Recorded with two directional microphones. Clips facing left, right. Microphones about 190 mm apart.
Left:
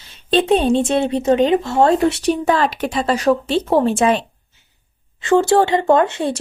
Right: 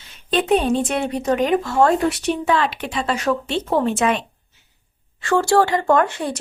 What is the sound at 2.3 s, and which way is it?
Speech, 40° left (ahead or behind).